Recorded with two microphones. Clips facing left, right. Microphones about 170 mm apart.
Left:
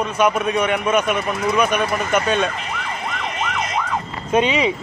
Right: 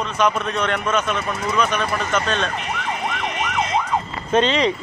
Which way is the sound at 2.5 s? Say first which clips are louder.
Right 2 dB; 65° right (ahead or behind).